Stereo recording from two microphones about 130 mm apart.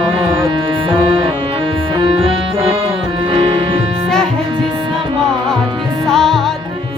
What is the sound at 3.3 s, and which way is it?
Music, 45° right (ahead or behind).